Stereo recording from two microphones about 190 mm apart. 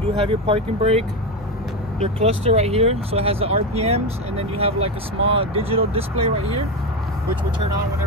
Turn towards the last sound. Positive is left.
turn(degrees=-30)  # may be behind; listen again after turning